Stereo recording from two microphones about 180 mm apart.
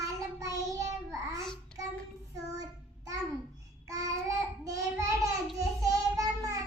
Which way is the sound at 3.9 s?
20° right (ahead or behind).